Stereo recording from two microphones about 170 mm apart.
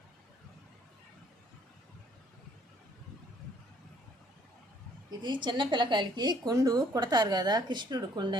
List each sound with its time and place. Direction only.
5.2 s a woman's voice: 25° right (ahead or behind)